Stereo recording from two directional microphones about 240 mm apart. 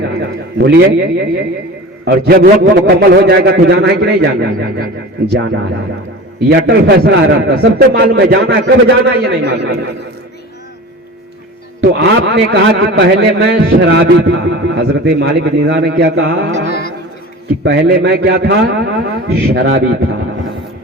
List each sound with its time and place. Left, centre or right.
0.0 s a man's voice: right
2.0 s a man's voice: right
11.8 s a man's voice: right